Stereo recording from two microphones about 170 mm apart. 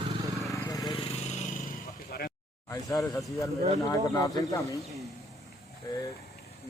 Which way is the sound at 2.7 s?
20° left (ahead or behind).